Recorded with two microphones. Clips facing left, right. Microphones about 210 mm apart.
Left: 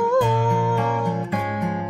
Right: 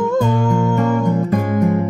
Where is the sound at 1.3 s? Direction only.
40° right (ahead or behind).